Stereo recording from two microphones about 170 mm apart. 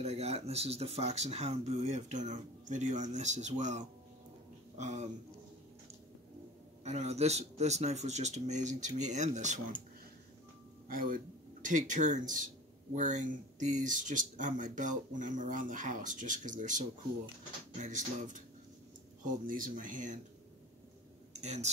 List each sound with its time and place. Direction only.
0.0 s speech: 40° right (ahead or behind)
6.8 s speech: 40° right (ahead or behind)
10.9 s speech: 55° right (ahead or behind)
21.3 s a sound: 40° right (ahead or behind)